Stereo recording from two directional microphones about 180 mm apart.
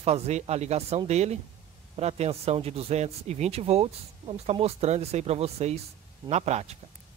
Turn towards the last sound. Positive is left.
turn(degrees=-35)  # may be behind; listen again after turning